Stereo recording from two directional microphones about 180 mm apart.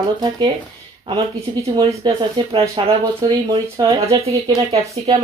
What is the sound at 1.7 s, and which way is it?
Speech, 25° right (ahead or behind).